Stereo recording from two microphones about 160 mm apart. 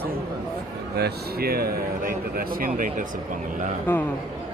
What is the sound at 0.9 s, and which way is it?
Speech, 80° right.